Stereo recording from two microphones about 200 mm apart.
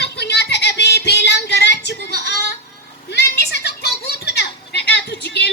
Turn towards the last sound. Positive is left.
turn(degrees=60)  # may be behind; listen again after turning